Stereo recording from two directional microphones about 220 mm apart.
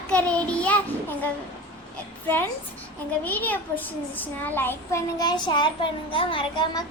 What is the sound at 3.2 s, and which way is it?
A child's voice, 10° left (ahead or behind).